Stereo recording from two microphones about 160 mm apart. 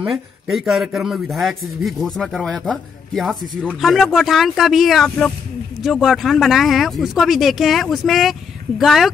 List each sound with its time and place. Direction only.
0.0 s a man's voice: centre (ahead or behind)